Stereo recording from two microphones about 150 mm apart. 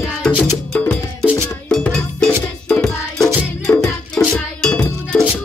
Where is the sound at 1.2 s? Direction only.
15° right (ahead or behind).